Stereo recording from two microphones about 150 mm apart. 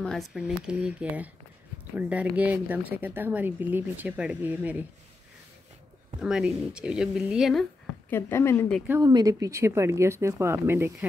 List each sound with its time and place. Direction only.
0.0 s a woman's voice: centre (ahead or behind)
6.2 s speech: 5° right (ahead or behind)
8.1 s a woman's voice: 15° left (ahead or behind)
9.0 s a woman's voice: 25° right (ahead or behind)